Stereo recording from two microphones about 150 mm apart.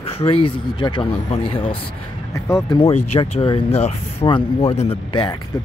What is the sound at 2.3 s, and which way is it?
Speech, 20° left (ahead or behind).